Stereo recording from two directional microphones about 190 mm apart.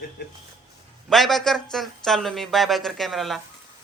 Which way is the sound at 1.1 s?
Centre (ahead or behind).